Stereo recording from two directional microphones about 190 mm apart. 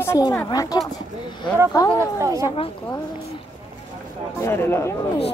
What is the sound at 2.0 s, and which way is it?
Speech, 15° right (ahead or behind).